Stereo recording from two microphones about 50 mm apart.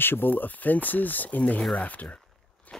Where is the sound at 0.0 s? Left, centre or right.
Left.